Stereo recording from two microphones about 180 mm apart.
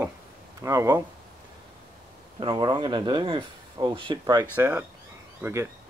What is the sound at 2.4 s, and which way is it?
Speech, 25° right (ahead or behind).